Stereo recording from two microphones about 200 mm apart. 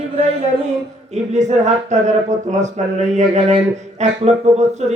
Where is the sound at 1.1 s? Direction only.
35° right (ahead or behind).